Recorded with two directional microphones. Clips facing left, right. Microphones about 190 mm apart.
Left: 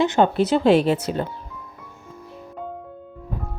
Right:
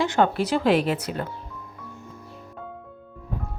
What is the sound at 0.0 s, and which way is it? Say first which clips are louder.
Speech: left 4 dB; 20° left (ahead or behind).